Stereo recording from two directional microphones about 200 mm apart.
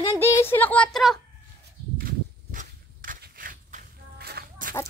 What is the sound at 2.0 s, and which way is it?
Walk, 45° right (ahead or behind).